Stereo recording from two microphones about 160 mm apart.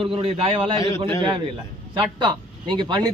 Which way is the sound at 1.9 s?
30° right (ahead or behind).